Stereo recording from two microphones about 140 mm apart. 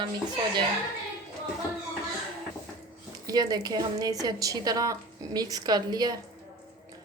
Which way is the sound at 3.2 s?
25° right (ahead or behind).